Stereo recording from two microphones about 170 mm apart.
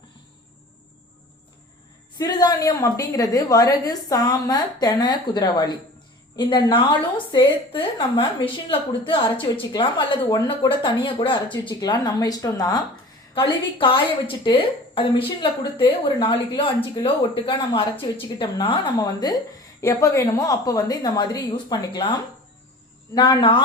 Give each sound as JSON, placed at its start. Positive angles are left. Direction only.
{"t": 2.1, "sound": "a woman's voice", "side_deg": 20}
{"t": 23.1, "sound": "a woman's voice", "side_deg": 25}